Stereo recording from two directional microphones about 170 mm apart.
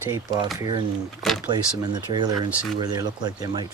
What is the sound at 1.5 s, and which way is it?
Speech, 25° right (ahead or behind).